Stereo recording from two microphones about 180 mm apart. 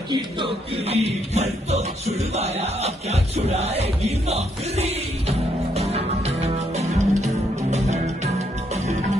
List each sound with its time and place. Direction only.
0.1 s speech: 30° right (ahead or behind)
5.8 s music: 35° right (ahead or behind)